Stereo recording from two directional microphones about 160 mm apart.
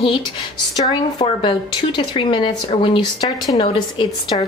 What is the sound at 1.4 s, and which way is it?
Speech, 30° left (ahead or behind).